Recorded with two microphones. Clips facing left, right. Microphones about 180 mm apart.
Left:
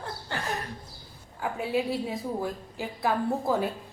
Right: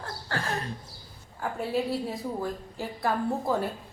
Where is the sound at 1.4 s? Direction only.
Centre (ahead or behind).